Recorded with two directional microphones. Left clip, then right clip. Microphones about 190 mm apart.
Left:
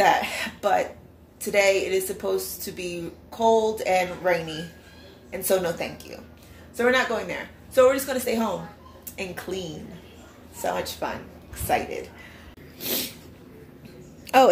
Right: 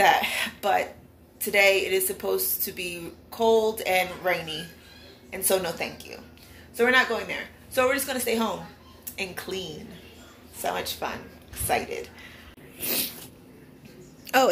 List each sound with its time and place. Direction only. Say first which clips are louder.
0.0 s a woman's voice: even; 5° left (ahead or behind)
12.8 s sneeze: left 1 dB; 5° left (ahead or behind)
14.2 s a sound: left 4 dB; 10° left (ahead or behind)